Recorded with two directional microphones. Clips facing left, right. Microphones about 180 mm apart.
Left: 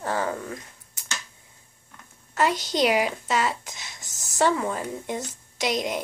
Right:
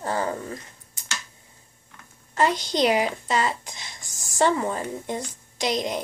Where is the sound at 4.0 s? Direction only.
45° left (ahead or behind).